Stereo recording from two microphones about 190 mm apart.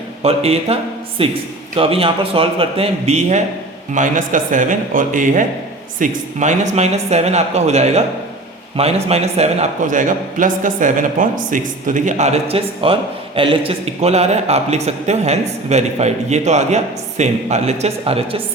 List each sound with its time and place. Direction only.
0.2 s a man's voice: 30° right (ahead or behind)